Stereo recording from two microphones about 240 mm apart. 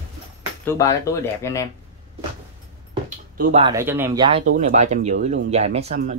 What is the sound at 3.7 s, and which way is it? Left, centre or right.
Speech, centre.